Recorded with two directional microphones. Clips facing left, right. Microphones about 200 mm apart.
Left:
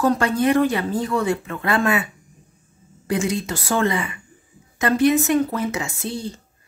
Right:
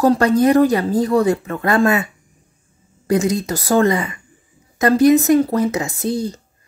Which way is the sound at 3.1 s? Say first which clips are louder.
Right 5 dB; 40° right (ahead or behind).